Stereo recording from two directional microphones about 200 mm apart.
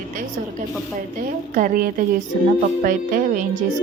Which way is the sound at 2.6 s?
45° right (ahead or behind).